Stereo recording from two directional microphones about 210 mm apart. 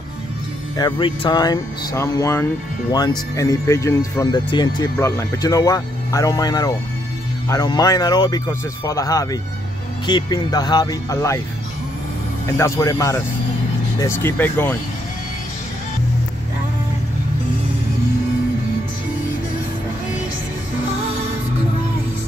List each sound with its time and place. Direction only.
0.7 s speech: 20° left (ahead or behind)
12.4 s speech: 15° left (ahead or behind)